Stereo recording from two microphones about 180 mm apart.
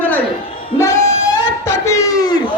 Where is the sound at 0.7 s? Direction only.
15° left (ahead or behind).